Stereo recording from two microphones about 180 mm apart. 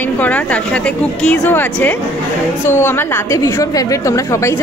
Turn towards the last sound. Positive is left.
turn(degrees=15)  # may be behind; listen again after turning